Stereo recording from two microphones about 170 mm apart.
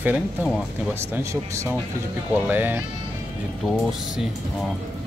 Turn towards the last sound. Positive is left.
turn(degrees=0)  # may be behind; listen again after turning